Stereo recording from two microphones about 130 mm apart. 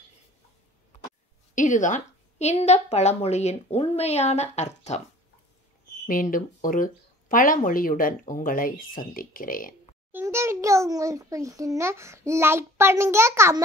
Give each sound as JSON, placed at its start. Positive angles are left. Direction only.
{"t": 1.5, "sound": "a woman's voice", "side_deg": 75}
{"t": 6.0, "sound": "speech", "side_deg": 90}
{"t": 10.1, "sound": "a child's voice", "side_deg": -20}